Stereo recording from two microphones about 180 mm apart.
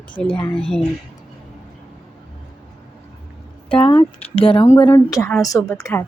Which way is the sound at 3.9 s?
30° left (ahead or behind).